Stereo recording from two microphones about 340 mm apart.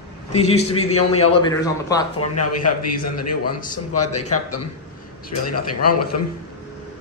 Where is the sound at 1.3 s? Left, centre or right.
Centre.